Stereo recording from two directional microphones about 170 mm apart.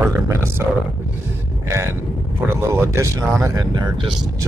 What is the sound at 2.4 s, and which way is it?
Speech, 15° right (ahead or behind).